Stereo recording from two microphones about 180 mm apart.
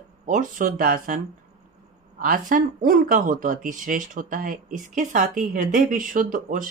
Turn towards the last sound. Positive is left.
turn(degrees=-50)  # may be behind; listen again after turning